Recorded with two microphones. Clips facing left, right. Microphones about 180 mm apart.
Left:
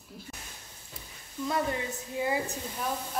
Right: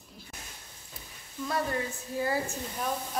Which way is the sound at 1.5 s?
20° left (ahead or behind).